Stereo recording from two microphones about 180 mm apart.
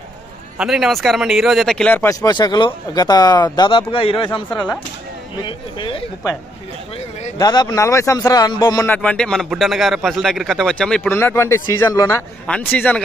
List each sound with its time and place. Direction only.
0.6 s a man's voice: centre (ahead or behind)
2.2 s speech: 20° left (ahead or behind)
4.3 s speech: 5° left (ahead or behind)
5.4 s speech: 25° left (ahead or behind)
7.3 s speech: 20° left (ahead or behind)
8.8 s a man's voice: 10° left (ahead or behind)
12.4 s a man's voice: 5° left (ahead or behind)